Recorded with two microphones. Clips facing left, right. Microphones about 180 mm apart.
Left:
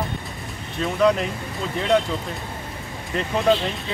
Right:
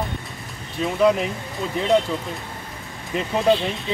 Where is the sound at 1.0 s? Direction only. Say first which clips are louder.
Right 1 dB; 5° right (ahead or behind).